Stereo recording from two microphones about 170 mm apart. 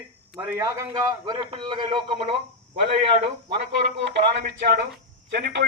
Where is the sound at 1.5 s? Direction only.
30° right (ahead or behind).